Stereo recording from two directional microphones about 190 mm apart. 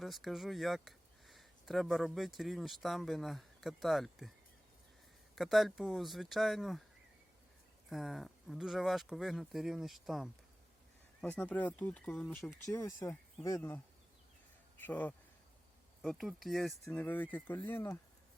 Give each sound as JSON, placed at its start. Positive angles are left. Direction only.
{"t": 0.0, "sound": "speech", "side_deg": 0}
{"t": 5.3, "sound": "speech", "side_deg": 0}
{"t": 7.9, "sound": "speech", "side_deg": 0}
{"t": 12.6, "sound": "speech", "side_deg": 15}